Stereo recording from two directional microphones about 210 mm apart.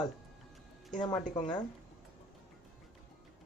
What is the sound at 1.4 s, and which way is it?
Speech, 20° left (ahead or behind).